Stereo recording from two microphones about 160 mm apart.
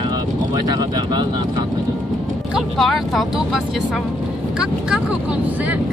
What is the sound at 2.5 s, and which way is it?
Speech, centre (ahead or behind).